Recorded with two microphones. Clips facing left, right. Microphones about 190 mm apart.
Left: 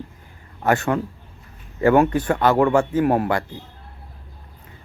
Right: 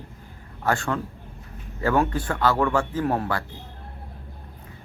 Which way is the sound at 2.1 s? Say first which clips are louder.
Left 5 dB; 20° left (ahead or behind).